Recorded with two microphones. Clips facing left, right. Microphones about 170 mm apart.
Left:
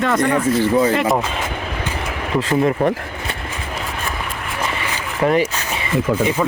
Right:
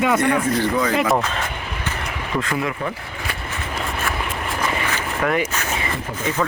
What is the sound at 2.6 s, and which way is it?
Speech, 50° left (ahead or behind).